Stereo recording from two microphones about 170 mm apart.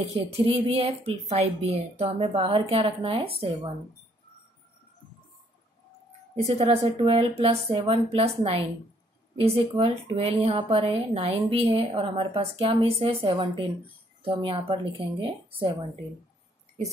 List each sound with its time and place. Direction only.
0.0 s a woman's voice: 35° right (ahead or behind)
6.4 s a woman's voice: 35° right (ahead or behind)